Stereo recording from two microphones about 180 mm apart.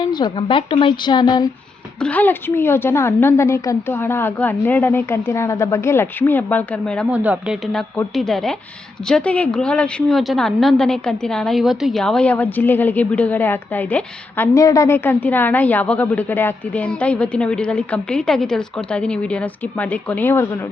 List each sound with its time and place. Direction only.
0.0 s a woman's voice: 25° left (ahead or behind)
2.0 s a woman's voice: 10° left (ahead or behind)
7.1 s a woman's voice: 10° right (ahead or behind); by 20.5 s 10° left (ahead or behind)